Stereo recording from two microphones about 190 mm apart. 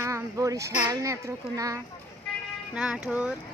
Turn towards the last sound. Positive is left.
turn(degrees=-5)  # may be behind; listen again after turning